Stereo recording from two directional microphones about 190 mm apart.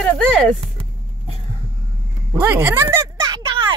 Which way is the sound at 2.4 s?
10° right (ahead or behind).